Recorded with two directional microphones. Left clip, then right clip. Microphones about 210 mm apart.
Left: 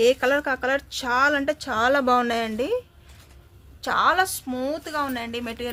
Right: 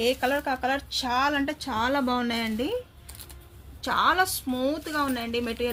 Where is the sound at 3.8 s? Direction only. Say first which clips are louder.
Left 2 dB; 45° left (ahead or behind).